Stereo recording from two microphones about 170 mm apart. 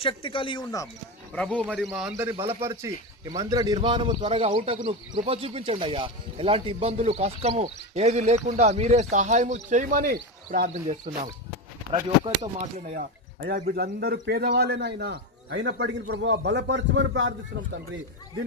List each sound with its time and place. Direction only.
0.0 s speech: 30° left (ahead or behind)
1.3 s speech: 5° left (ahead or behind)
2.3 s a man's voice: 30° right (ahead or behind)
2.6 s a man's voice: 15° right (ahead or behind); by 11.3 s 45° right (ahead or behind)
11.9 s a man's voice: 35° right (ahead or behind)
13.4 s a man's voice: 65° right (ahead or behind); by 17.3 s 90° right